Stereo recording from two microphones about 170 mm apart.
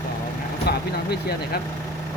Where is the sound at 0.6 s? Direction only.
70° left (ahead or behind).